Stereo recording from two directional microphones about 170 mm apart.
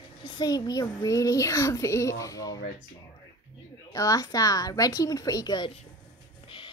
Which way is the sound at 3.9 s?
20° left (ahead or behind).